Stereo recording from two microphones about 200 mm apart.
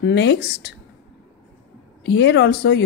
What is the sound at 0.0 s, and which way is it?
Speech, 60° left (ahead or behind).